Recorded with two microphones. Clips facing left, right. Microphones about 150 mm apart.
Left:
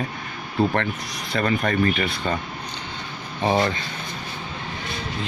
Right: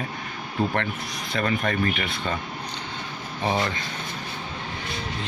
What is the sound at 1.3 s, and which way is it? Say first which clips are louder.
Speech: left 3 dB; 40° left (ahead or behind).